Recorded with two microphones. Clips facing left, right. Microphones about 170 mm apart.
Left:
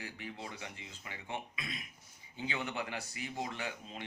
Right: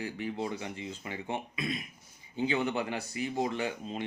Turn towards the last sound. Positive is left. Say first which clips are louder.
# right 8 dB
turn(degrees=-25)  # may be behind; listen again after turning